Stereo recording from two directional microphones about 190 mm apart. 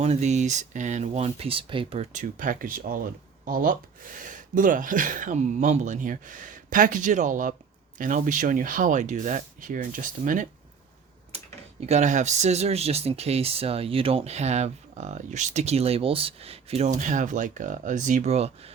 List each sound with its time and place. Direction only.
0.0 s speech: 35° right (ahead or behind)
11.9 s speech: 40° right (ahead or behind)